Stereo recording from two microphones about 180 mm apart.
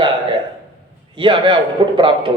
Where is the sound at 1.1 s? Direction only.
25° right (ahead or behind).